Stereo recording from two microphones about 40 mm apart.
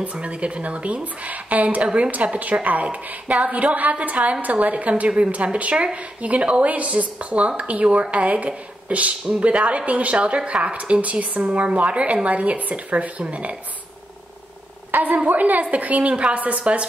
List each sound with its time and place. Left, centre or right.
0.0 s speech: right
14.9 s a woman's voice: right